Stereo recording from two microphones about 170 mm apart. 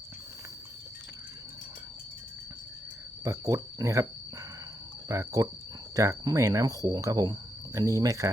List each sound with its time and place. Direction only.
3.2 s speech: 20° right (ahead or behind)
5.0 s speech: 20° right (ahead or behind)